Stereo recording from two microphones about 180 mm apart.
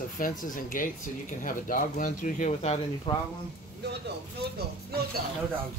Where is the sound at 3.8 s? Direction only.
65° right (ahead or behind).